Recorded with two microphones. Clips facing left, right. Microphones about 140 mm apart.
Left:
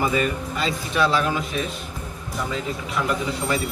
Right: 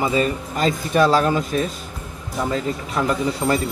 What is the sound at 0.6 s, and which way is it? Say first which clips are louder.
Speech: right 6 dB; 45° right (ahead or behind).